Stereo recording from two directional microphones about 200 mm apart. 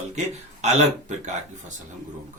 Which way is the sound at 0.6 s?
35° right (ahead or behind).